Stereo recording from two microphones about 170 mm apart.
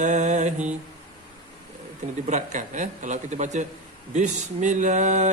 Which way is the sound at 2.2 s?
45° right (ahead or behind).